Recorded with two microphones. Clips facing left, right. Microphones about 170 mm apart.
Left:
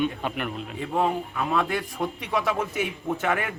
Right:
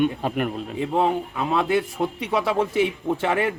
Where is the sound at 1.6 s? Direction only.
5° right (ahead or behind).